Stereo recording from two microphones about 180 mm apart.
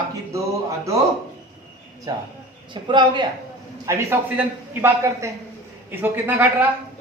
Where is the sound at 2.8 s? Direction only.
25° right (ahead or behind).